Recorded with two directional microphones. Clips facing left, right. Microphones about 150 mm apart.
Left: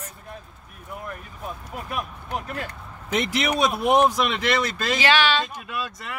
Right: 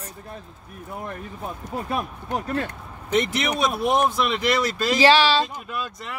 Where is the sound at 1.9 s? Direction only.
35° right (ahead or behind).